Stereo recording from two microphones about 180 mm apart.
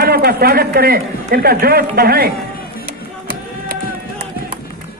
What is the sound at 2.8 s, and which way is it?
Music, 55° right (ahead or behind).